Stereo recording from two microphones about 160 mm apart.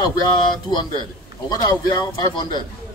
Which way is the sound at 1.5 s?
25° left (ahead or behind).